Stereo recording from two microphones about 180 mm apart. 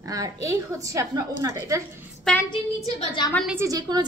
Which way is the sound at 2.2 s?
10° left (ahead or behind).